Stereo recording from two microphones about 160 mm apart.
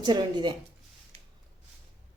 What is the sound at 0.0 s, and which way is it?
Speech, 25° right (ahead or behind).